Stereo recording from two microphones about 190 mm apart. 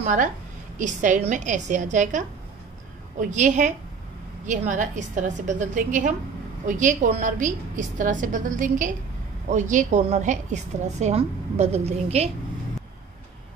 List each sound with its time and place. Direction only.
0.0 s a woman's voice: 40° right (ahead or behind)